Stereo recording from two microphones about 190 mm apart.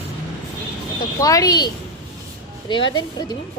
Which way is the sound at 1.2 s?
20° left (ahead or behind).